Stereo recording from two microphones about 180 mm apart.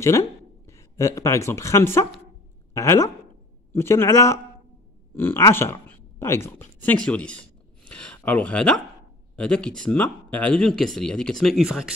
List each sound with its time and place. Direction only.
0.7 s a man's voice: 15° left (ahead or behind); by 11.9 s centre (ahead or behind)